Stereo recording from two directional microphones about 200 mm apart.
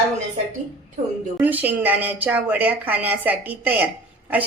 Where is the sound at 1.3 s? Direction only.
10° right (ahead or behind).